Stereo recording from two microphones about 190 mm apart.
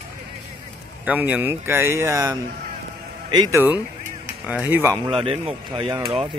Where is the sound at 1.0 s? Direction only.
10° right (ahead or behind).